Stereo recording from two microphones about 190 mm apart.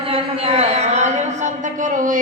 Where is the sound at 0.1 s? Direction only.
30° right (ahead or behind).